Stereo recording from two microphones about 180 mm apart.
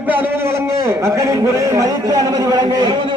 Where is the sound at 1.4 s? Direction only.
20° right (ahead or behind).